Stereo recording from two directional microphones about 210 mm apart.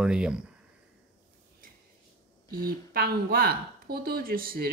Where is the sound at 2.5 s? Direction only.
45° right (ahead or behind).